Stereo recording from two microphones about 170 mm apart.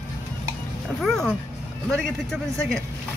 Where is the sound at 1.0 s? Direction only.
5° left (ahead or behind).